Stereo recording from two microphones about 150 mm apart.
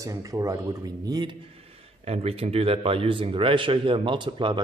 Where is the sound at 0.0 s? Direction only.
20° right (ahead or behind).